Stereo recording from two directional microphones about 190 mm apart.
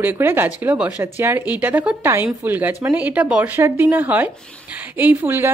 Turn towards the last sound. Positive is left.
turn(degrees=-10)  # may be behind; listen again after turning